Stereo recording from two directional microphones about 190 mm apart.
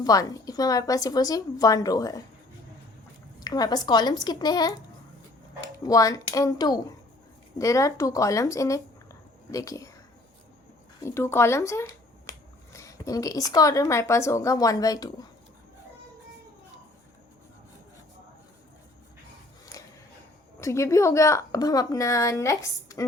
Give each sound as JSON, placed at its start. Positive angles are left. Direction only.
{"t": 0.0, "sound": "a woman's voice", "side_deg": 20}
{"t": 3.4, "sound": "a woman's voice", "side_deg": 20}
{"t": 5.8, "sound": "a woman's voice", "side_deg": 20}
{"t": 11.0, "sound": "speech", "side_deg": 15}
{"t": 19.7, "sound": "a sound", "side_deg": 15}
{"t": 20.6, "sound": "speech", "side_deg": 15}